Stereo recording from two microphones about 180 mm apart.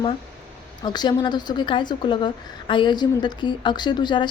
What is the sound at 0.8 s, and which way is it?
A woman's voice, 25° left (ahead or behind).